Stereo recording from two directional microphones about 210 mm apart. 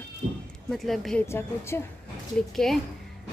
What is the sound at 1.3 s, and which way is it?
A woman's voice, 10° left (ahead or behind).